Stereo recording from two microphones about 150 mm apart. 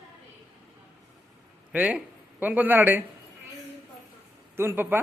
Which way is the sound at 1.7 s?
10° right (ahead or behind).